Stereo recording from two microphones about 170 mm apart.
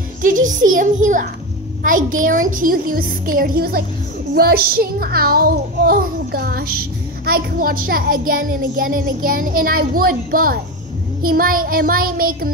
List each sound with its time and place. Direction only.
0.2 s a child's voice: 50° right (ahead or behind)